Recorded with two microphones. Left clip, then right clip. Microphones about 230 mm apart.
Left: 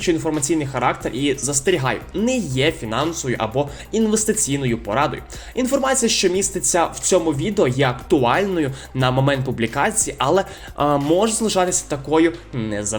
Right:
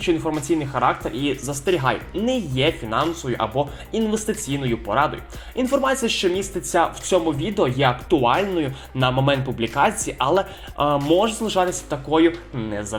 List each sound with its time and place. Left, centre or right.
0.1 s speech: left
6.4 s speech: left